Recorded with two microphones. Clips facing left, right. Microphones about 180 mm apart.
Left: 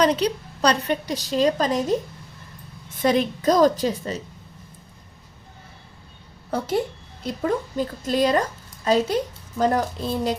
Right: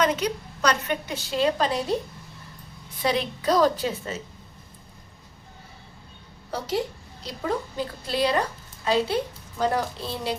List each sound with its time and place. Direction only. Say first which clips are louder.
0.0 s a woman's voice: left 4 dB; 35° left (ahead or behind)
6.5 s a woman's voice: left 4 dB; 50° left (ahead or behind)